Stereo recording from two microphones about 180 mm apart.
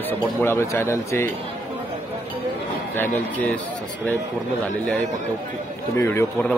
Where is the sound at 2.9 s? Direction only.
10° left (ahead or behind).